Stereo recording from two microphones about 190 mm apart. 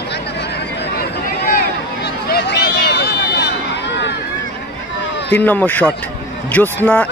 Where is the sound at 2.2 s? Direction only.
60° left (ahead or behind).